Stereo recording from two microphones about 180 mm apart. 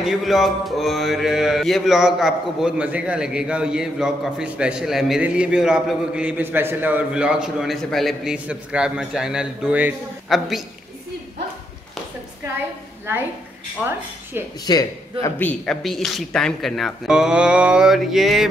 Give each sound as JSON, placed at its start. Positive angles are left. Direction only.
{"t": 0.0, "sound": "mantra", "side_deg": 0}
{"t": 13.8, "sound": "a woman's voice", "side_deg": -10}
{"t": 14.7, "sound": "mantra", "side_deg": 20}